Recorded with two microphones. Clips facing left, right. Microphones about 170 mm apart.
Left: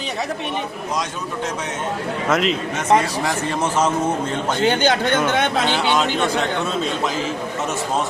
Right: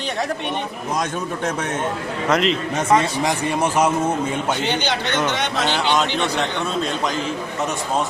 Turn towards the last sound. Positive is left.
turn(degrees=0)  # may be behind; listen again after turning